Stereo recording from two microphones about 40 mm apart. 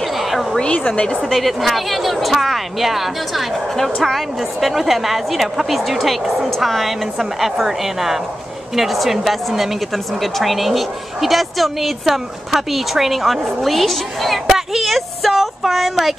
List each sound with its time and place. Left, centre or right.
0.2 s a sound: centre
0.7 s a woman's voice: left
1.3 s speech: centre